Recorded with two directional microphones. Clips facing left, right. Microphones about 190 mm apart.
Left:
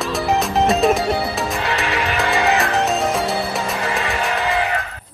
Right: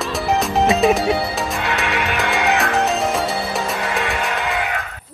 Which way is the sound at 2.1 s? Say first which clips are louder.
Left 2 dB; centre (ahead or behind).